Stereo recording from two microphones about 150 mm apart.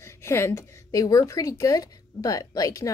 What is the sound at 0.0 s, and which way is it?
A woman's voice, 20° left (ahead or behind).